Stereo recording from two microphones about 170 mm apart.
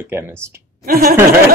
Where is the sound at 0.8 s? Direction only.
60° right (ahead or behind).